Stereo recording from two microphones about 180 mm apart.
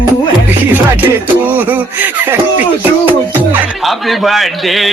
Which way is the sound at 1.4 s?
10° right (ahead or behind).